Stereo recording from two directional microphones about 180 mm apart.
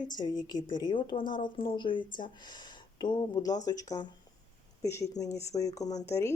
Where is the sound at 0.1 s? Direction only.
25° left (ahead or behind).